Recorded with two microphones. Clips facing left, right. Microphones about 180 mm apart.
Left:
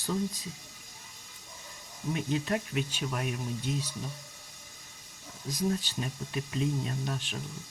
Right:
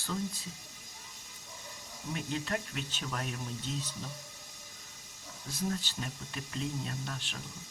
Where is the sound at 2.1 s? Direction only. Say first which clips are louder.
Left 5 dB; 15° left (ahead or behind).